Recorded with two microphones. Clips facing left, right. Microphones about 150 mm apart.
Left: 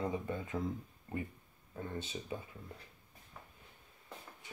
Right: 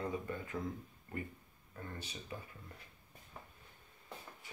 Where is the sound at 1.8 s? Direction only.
20° left (ahead or behind).